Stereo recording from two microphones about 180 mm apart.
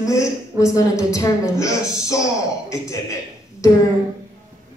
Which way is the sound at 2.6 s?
15° left (ahead or behind).